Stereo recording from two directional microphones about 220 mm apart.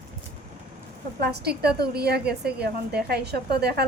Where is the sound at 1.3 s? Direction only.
50° right (ahead or behind).